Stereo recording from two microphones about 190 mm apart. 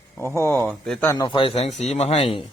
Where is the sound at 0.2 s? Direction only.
15° left (ahead or behind); by 2.4 s 35° left (ahead or behind).